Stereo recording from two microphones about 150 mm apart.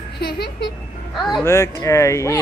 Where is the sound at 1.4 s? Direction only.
20° left (ahead or behind).